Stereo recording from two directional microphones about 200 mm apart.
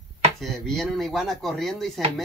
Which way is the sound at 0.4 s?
Centre (ahead or behind).